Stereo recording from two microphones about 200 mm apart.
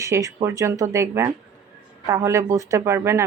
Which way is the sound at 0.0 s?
15° right (ahead or behind).